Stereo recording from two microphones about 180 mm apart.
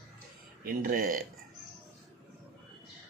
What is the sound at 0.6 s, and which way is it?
Speech, 50° right (ahead or behind).